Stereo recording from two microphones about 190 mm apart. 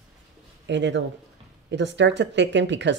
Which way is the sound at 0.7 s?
70° right (ahead or behind).